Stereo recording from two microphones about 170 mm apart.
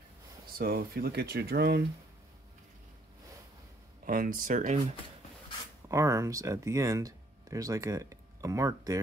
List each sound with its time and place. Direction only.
0.6 s speech: 60° right (ahead or behind); by 1.8 s 80° right
4.0 s speech: 55° right (ahead or behind)
5.9 s speech: 15° right (ahead or behind)